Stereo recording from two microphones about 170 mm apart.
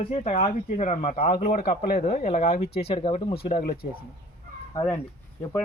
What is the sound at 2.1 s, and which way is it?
Speech, 40° left (ahead or behind).